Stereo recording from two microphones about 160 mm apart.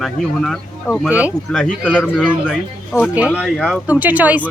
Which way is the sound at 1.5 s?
5° left (ahead or behind).